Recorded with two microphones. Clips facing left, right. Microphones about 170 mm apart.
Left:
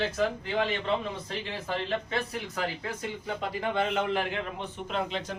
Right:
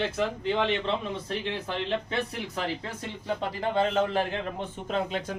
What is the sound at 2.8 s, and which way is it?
A man's voice, 30° right (ahead or behind).